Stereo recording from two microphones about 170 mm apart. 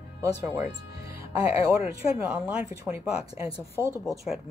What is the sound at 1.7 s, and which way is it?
Speech, 10° right (ahead or behind).